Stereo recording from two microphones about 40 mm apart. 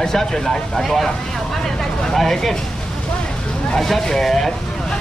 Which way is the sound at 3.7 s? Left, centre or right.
Centre.